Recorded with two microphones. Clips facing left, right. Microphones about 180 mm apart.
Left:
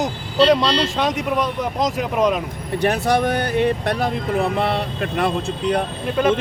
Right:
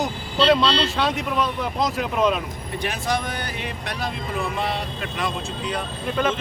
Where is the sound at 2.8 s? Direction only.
60° left (ahead or behind).